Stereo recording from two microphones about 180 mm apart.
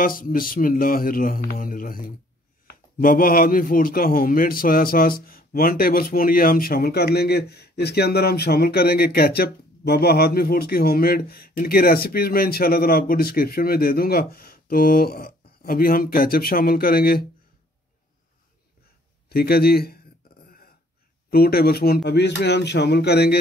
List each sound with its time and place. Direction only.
0.0 s speech: 50° left (ahead or behind)
19.2 s a man's voice: 60° left (ahead or behind)
20.4 s a sound: 55° left (ahead or behind)
21.3 s speech: 55° left (ahead or behind)